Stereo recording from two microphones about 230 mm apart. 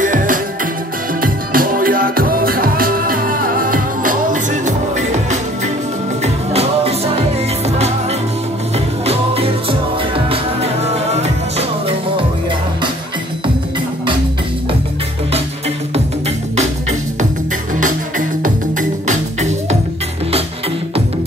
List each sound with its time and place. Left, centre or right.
0.0 s music: right
17.7 s music: right